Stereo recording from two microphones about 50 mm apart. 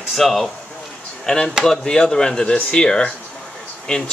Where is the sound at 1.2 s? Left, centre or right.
Centre.